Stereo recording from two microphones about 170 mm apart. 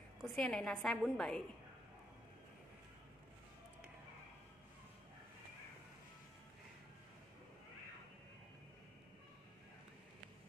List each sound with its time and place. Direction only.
0.2 s a woman's voice: 5° left (ahead or behind)